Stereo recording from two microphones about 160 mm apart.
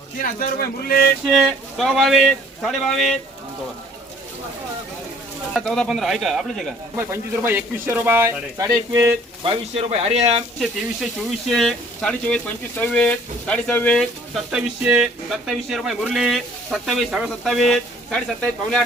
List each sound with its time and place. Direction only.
0.2 s speech: 65° left (ahead or behind)
1.4 s speech: centre (ahead or behind)
5.5 s speech: 5° left (ahead or behind)
6.9 s speech: 15° right (ahead or behind)
9.4 s speech: 35° right (ahead or behind)
10.6 s speech: centre (ahead or behind)